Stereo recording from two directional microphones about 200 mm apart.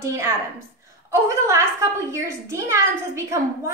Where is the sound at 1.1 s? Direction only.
15° right (ahead or behind).